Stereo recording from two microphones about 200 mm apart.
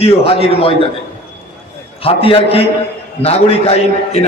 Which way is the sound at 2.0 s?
30° left (ahead or behind).